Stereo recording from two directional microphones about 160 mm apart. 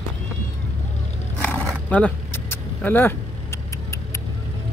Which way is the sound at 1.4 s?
10° left (ahead or behind).